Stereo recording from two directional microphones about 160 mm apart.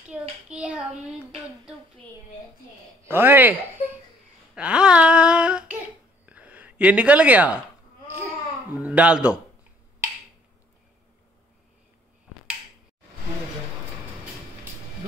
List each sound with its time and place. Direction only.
0.1 s child singing: 5° right (ahead or behind)
3.1 s a man's voice: 15° right (ahead or behind)
4.6 s a sound: 5° right (ahead or behind)
8.7 s speech: 10° right (ahead or behind)